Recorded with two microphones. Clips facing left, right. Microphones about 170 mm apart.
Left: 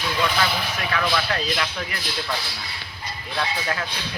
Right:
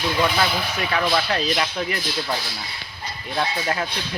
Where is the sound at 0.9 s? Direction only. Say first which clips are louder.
Right 2 dB; 25° right (ahead or behind).